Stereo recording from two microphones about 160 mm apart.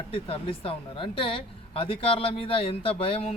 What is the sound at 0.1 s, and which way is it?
Speech, 35° left (ahead or behind).